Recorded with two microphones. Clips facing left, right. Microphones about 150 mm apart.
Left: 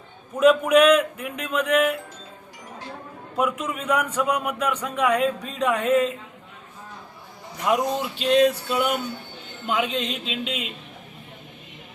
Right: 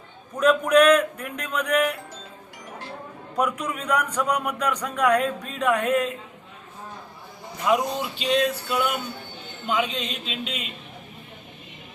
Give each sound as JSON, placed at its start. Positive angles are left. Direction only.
{"t": 0.3, "sound": "a man's voice", "side_deg": 5}
{"t": 3.3, "sound": "speech", "side_deg": 5}
{"t": 7.6, "sound": "speech", "side_deg": 0}
{"t": 9.6, "sound": "speech", "side_deg": 5}
{"t": 10.2, "sound": "speech", "side_deg": 90}